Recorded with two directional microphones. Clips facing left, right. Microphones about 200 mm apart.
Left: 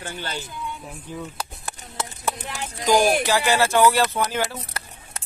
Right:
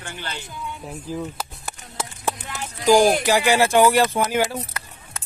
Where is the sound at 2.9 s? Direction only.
5° right (ahead or behind).